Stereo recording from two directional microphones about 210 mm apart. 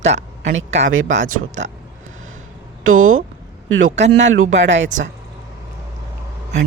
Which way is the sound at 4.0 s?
60° right (ahead or behind).